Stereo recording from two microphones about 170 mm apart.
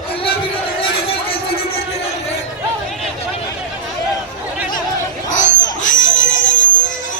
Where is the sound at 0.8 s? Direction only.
35° left (ahead or behind).